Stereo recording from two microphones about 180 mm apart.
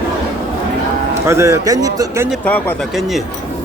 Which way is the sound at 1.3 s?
15° right (ahead or behind).